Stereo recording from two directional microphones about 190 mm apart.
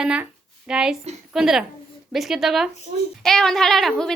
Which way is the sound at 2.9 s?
35° right (ahead or behind).